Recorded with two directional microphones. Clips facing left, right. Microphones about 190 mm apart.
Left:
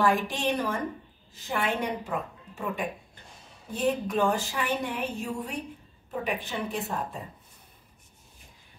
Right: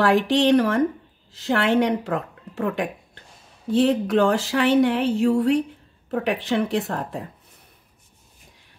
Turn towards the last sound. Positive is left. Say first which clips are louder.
# right 7 dB
turn(degrees=-80)